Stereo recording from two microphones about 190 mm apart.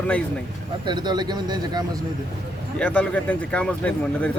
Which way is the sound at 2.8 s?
5° left (ahead or behind).